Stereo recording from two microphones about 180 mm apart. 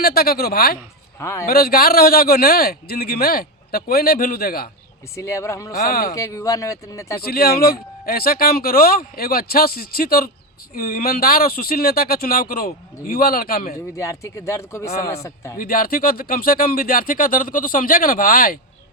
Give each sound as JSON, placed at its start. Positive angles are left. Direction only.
{"t": 0.0, "sound": "a man's voice", "side_deg": 60}
{"t": 1.2, "sound": "speech", "side_deg": 15}
{"t": 1.5, "sound": "a man's voice", "side_deg": 55}
{"t": 5.1, "sound": "speech", "side_deg": 15}
{"t": 5.7, "sound": "a man's voice", "side_deg": 60}
{"t": 6.1, "sound": "speech", "side_deg": 15}
{"t": 7.3, "sound": "a man's voice", "side_deg": 60}
{"t": 13.9, "sound": "speech", "side_deg": 15}
{"t": 15.5, "sound": "speech", "side_deg": 55}